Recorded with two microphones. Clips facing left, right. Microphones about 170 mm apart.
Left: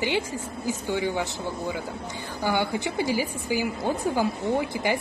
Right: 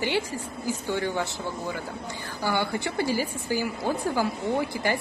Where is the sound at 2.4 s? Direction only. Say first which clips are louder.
Left 2 dB; 15° left (ahead or behind).